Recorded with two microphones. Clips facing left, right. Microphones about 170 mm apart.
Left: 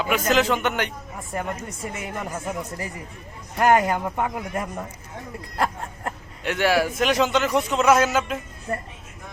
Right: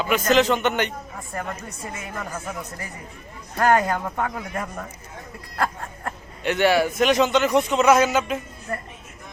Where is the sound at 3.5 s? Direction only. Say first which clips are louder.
Left 1 dB; 15° left (ahead or behind).